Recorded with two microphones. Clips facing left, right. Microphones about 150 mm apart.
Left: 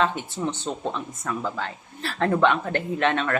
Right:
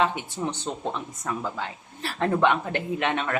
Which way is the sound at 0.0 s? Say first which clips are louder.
Left 1 dB; 15° right (ahead or behind).